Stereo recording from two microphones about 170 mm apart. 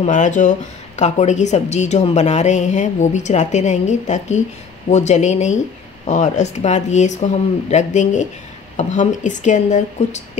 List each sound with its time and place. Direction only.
0.0 s a woman's voice: 45° left (ahead or behind)